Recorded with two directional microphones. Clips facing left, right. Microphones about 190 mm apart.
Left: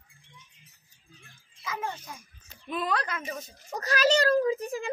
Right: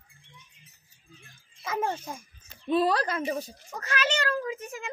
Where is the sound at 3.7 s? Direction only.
35° left (ahead or behind).